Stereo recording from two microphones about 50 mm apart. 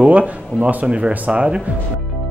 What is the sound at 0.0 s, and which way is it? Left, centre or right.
Speech, right.